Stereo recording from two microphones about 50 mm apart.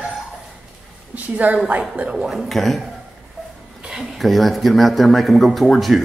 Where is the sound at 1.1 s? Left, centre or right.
Right.